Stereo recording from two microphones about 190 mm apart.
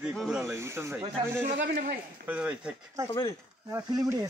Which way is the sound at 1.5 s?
50° right (ahead or behind).